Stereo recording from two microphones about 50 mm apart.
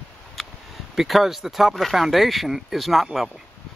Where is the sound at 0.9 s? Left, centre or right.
Centre.